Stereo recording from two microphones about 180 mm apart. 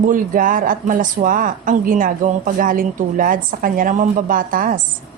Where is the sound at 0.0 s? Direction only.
50° right (ahead or behind).